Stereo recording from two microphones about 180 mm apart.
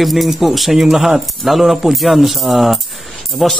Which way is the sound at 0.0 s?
Centre (ahead or behind).